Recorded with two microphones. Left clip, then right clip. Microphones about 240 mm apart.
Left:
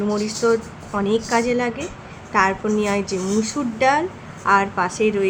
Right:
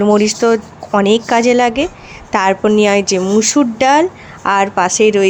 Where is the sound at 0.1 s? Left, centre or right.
Right.